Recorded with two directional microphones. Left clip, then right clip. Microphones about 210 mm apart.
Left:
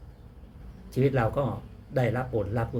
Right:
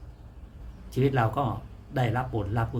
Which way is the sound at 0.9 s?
15° right (ahead or behind).